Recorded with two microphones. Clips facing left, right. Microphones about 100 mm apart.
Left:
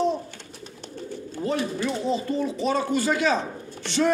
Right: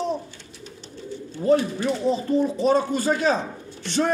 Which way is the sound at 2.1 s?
35° right (ahead or behind).